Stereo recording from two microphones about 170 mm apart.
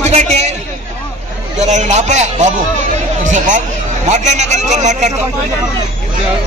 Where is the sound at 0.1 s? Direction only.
40° right (ahead or behind).